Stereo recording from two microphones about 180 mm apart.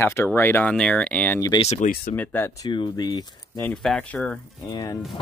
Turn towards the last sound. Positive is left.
turn(degrees=20)  # may be behind; listen again after turning